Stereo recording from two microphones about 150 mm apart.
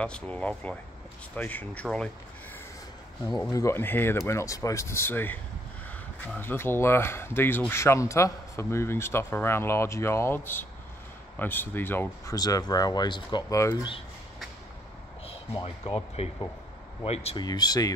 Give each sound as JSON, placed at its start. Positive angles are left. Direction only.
{"t": 0.0, "sound": "speech", "side_deg": 5}
{"t": 3.3, "sound": "speech", "side_deg": 25}
{"t": 12.4, "sound": "speech", "side_deg": 25}
{"t": 15.5, "sound": "speech", "side_deg": 35}
{"t": 17.4, "sound": "speech", "side_deg": 25}